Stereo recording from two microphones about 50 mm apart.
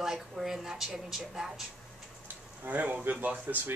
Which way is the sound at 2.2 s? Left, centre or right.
Right.